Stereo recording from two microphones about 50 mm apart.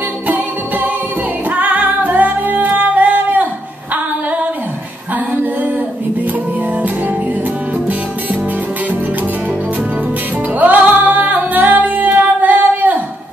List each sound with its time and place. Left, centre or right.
0.3 s music: right
10.6 s music: right